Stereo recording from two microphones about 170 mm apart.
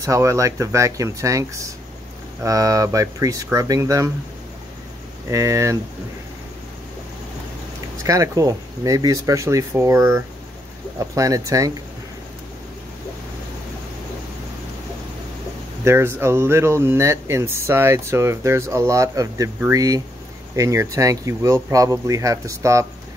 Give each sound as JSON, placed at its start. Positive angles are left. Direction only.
{"t": 0.0, "sound": "speech", "side_deg": -20}
{"t": 5.3, "sound": "speech", "side_deg": -20}
{"t": 8.0, "sound": "speech", "side_deg": -20}
{"t": 15.8, "sound": "speech", "side_deg": -15}